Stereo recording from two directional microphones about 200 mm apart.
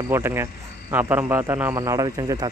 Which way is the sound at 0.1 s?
10° right (ahead or behind).